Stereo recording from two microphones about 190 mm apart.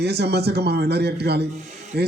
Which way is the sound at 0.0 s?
60° right (ahead or behind).